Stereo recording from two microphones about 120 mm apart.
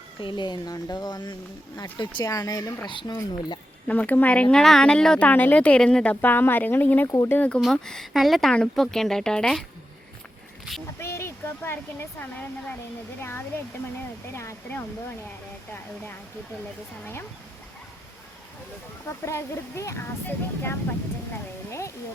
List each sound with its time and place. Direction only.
0.2 s speech: 40° left (ahead or behind)
3.8 s speech: 10° left (ahead or behind)
7.1 s speech: 25° left (ahead or behind)
7.3 s speech: 15° left (ahead or behind)
7.6 s speech: centre (ahead or behind)
11.0 s a sound: 20° left (ahead or behind)
12.2 s speech: 15° left (ahead or behind)
14.3 s speech: 20° left (ahead or behind)
19.0 s speech: 25° left (ahead or behind)